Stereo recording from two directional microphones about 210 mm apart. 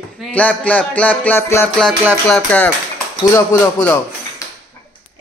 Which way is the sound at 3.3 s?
10° left (ahead or behind).